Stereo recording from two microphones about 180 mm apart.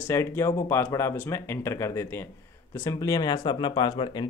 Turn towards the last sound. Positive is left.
turn(degrees=25)  # may be behind; listen again after turning